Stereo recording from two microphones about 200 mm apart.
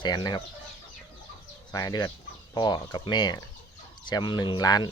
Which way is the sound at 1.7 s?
20° left (ahead or behind).